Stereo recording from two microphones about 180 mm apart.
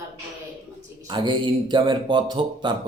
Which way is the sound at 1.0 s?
25° right (ahead or behind).